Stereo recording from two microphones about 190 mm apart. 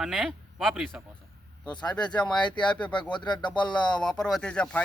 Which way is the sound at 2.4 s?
25° left (ahead or behind).